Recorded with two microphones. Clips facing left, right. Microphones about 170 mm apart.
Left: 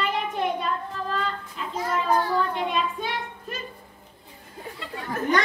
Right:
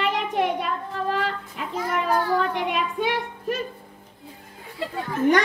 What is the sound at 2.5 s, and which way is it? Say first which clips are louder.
Music: right 1 dB; 65° right (ahead or behind).